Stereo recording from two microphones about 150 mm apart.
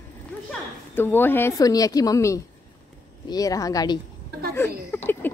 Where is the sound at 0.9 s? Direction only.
15° left (ahead or behind).